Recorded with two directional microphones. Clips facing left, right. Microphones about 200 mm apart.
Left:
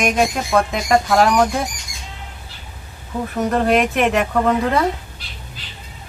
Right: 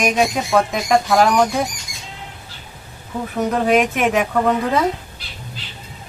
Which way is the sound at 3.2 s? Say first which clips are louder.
Left 1 dB; centre (ahead or behind).